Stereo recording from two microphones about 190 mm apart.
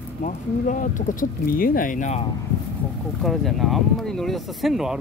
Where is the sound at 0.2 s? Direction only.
40° left (ahead or behind).